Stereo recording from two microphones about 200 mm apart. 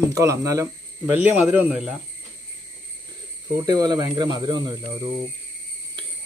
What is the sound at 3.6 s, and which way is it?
Speech, 20° right (ahead or behind).